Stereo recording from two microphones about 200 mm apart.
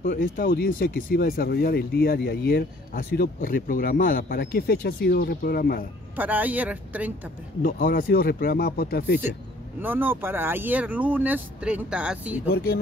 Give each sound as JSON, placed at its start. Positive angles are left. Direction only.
{"t": 0.0, "sound": "speech", "side_deg": 50}
{"t": 6.1, "sound": "speech", "side_deg": -10}
{"t": 7.6, "sound": "speech", "side_deg": 45}
{"t": 9.8, "sound": "speech", "side_deg": -10}
{"t": 12.4, "sound": "speech", "side_deg": 50}